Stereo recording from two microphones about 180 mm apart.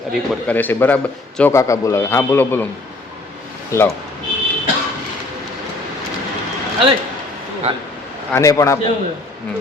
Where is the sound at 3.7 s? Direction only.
15° left (ahead or behind).